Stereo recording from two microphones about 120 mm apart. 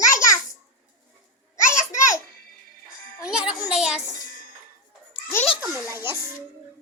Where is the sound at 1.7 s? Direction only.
25° left (ahead or behind).